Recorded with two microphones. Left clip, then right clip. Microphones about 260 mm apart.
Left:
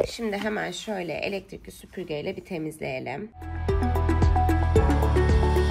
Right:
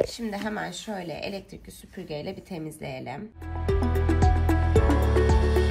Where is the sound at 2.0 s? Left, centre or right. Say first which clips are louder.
Left 4 dB; left.